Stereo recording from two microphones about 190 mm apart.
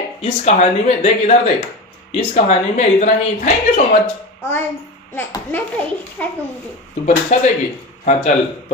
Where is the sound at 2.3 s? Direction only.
40° left (ahead or behind).